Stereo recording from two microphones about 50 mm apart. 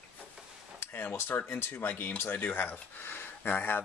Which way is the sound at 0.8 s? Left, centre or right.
Left.